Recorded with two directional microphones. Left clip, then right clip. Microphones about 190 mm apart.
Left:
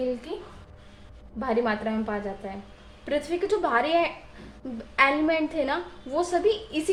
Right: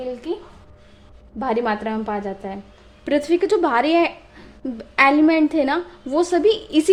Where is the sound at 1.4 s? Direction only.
50° right (ahead or behind).